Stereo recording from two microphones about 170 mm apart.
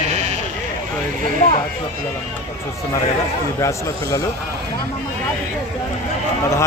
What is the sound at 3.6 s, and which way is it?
Speech, 20° left (ahead or behind).